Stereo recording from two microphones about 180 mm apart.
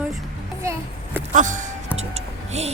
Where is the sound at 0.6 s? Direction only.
15° right (ahead or behind).